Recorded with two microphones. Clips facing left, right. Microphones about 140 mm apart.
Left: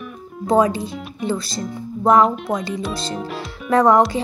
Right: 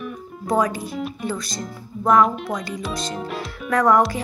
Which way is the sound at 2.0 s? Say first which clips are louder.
Left 2 dB; 30° left (ahead or behind).